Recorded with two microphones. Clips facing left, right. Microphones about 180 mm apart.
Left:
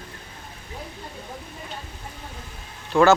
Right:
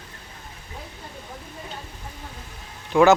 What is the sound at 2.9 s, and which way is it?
Speech, centre (ahead or behind).